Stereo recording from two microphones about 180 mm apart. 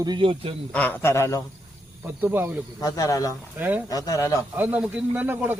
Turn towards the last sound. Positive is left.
turn(degrees=-10)  # may be behind; listen again after turning